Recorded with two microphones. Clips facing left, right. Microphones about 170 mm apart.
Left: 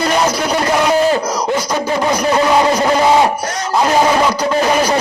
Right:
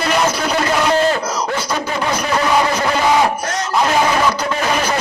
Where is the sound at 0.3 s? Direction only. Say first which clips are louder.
Left 2 dB; 10° left (ahead or behind).